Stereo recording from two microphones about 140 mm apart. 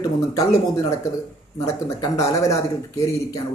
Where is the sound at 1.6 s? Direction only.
25° left (ahead or behind).